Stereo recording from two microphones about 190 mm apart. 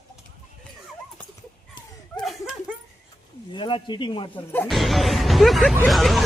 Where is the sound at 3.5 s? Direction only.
25° left (ahead or behind).